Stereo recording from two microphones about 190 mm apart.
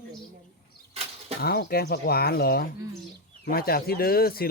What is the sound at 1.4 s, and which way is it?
Speech, 55° left (ahead or behind).